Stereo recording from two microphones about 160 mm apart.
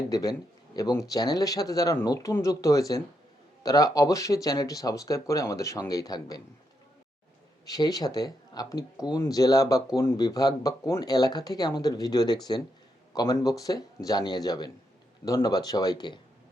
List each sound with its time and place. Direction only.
0.1 s speech: 20° left (ahead or behind)
7.6 s speech: 25° left (ahead or behind)